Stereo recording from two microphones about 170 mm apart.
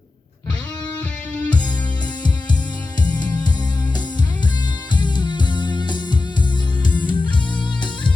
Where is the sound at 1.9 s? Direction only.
25° left (ahead or behind).